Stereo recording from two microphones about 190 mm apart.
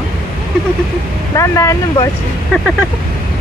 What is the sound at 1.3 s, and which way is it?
Speech, 15° left (ahead or behind).